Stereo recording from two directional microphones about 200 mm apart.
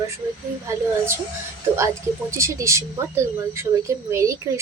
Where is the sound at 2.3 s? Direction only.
15° right (ahead or behind).